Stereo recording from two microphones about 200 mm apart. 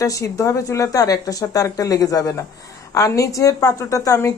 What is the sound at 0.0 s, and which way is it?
A woman's voice, 15° left (ahead or behind).